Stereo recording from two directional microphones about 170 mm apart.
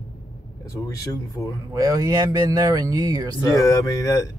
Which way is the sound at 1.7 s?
20° right (ahead or behind).